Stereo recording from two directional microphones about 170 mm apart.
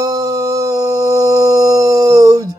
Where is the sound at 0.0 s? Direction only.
20° right (ahead or behind).